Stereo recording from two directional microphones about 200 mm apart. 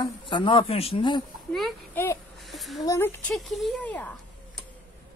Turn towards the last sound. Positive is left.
turn(degrees=5)  # may be behind; listen again after turning